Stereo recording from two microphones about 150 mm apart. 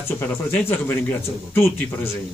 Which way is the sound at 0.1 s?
15° left (ahead or behind).